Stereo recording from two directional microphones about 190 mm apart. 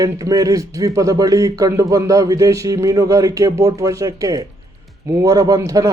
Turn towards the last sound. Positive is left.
turn(degrees=-20)  # may be behind; listen again after turning